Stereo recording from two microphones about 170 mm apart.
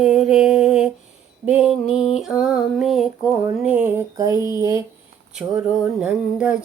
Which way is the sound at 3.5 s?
10° right (ahead or behind).